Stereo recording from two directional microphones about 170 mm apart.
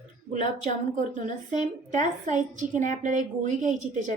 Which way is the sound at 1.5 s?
45° right (ahead or behind).